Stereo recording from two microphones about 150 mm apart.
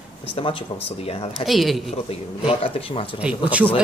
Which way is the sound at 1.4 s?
Centre (ahead or behind).